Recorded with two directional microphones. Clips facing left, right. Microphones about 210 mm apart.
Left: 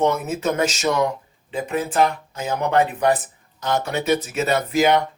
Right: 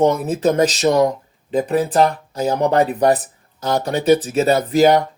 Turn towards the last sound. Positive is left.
turn(degrees=-35)  # may be behind; listen again after turning